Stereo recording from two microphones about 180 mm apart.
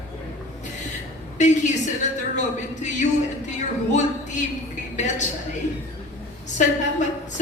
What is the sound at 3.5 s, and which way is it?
Music, 40° left (ahead or behind).